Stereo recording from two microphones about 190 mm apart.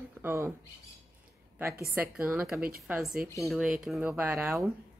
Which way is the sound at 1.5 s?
15° right (ahead or behind).